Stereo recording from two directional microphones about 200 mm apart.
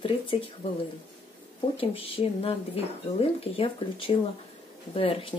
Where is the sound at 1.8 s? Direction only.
30° left (ahead or behind).